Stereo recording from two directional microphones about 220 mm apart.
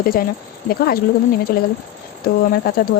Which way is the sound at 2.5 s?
45° left (ahead or behind).